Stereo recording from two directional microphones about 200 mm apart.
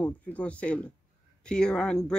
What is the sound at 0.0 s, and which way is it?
Speech, 5° left (ahead or behind).